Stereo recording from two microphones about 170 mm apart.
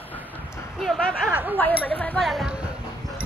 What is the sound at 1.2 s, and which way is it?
Speech, 10° right (ahead or behind).